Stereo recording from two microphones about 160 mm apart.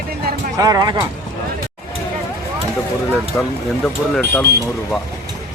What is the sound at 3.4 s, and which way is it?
Speech, 15° left (ahead or behind).